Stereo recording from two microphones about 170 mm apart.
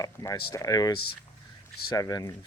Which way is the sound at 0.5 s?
20° left (ahead or behind).